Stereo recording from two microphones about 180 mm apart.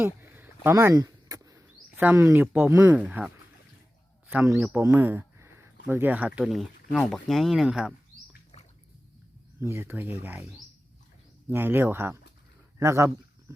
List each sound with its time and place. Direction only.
0.0 s speech: 10° right (ahead or behind)
9.6 s speech: 15° right (ahead or behind)